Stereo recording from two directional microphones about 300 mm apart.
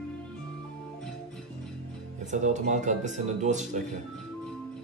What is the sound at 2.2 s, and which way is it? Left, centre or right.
Speech, right.